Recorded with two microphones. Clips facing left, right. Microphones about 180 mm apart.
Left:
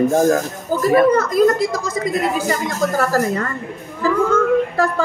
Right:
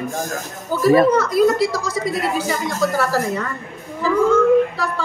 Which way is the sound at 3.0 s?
45° left (ahead or behind).